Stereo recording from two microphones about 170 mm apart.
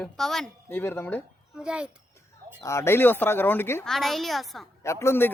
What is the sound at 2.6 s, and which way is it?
A man's voice, 15° left (ahead or behind).